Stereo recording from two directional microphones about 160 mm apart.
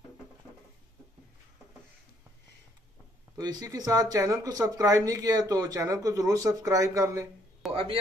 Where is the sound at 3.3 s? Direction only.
25° right (ahead or behind).